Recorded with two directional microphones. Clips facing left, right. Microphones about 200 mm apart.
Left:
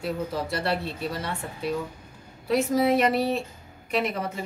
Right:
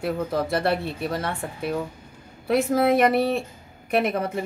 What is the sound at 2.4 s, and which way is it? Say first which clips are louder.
Speech: right 2 dB; 55° right (ahead or behind).